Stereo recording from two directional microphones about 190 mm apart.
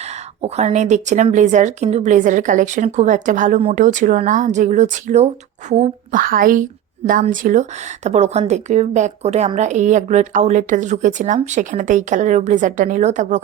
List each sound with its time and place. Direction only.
0.4 s speech: 35° right (ahead or behind)